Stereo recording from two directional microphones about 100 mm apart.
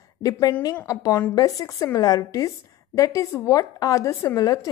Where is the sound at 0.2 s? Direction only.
40° left (ahead or behind).